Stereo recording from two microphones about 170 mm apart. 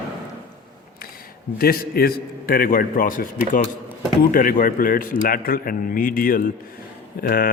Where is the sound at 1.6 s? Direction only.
65° left (ahead or behind).